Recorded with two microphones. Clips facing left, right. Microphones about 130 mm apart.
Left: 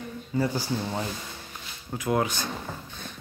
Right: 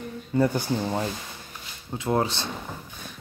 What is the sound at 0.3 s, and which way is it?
Speech, 55° right (ahead or behind).